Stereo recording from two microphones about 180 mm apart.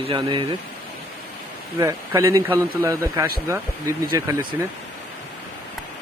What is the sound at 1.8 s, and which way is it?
Speech, 15° right (ahead or behind).